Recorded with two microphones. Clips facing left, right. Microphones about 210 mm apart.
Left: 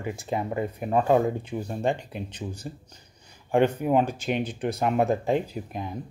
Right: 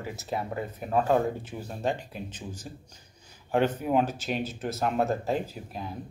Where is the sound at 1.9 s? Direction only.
60° left (ahead or behind).